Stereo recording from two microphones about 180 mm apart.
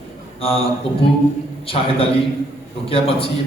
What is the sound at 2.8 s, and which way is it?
Speech, 30° left (ahead or behind).